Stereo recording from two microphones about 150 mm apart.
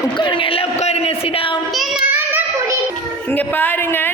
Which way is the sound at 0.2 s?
35° left (ahead or behind).